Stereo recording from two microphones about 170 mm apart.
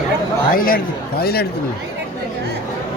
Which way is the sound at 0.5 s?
60° left (ahead or behind).